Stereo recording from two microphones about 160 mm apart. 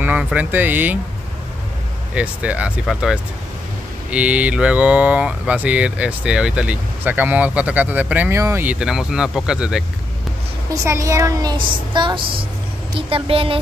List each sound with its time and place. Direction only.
0.0 s speech: 10° right (ahead or behind)
2.1 s speech: 10° right (ahead or behind)
10.7 s speech: 20° right (ahead or behind)
11.5 s a woman's voice: 30° right (ahead or behind)